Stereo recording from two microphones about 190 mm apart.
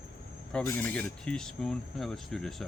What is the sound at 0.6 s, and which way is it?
Speech, 10° left (ahead or behind).